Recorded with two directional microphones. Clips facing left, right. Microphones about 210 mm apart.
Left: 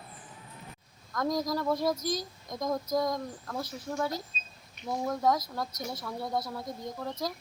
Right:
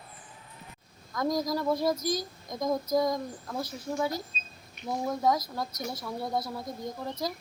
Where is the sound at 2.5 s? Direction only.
5° right (ahead or behind).